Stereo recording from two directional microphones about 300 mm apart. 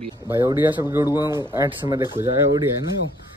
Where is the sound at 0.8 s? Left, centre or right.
Centre.